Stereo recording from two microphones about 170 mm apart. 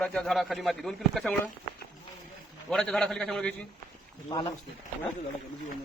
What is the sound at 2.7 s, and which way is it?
Speech, 5° left (ahead or behind).